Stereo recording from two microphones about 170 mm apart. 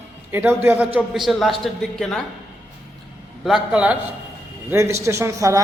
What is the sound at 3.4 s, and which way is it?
A man's voice, 5° right (ahead or behind).